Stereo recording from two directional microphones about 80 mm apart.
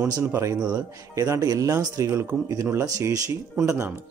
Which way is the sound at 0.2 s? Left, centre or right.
Right.